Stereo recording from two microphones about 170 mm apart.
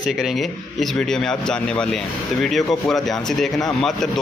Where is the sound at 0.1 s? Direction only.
Centre (ahead or behind).